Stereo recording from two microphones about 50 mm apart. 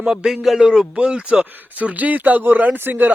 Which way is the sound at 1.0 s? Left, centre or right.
Right.